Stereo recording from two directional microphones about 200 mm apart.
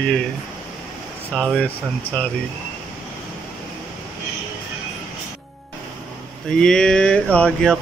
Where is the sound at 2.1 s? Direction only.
30° left (ahead or behind).